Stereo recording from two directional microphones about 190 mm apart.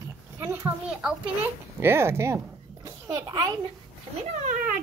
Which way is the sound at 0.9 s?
5° right (ahead or behind).